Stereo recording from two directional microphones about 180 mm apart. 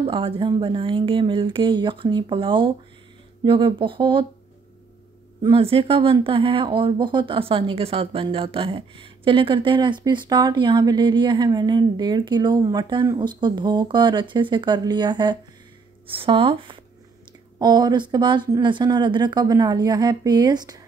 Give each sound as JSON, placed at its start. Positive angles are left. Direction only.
{"t": 0.0, "sound": "speech", "side_deg": -30}
{"t": 5.4, "sound": "speech", "side_deg": -30}